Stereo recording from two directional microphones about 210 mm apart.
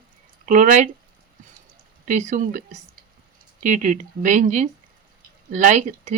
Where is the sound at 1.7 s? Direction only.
35° right (ahead or behind).